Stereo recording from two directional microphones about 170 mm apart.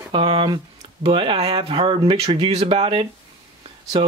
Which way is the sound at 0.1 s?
30° right (ahead or behind).